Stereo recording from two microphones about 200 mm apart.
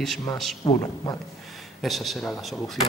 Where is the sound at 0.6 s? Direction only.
15° left (ahead or behind).